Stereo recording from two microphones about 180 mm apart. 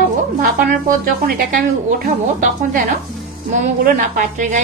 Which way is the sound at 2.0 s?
50° right (ahead or behind).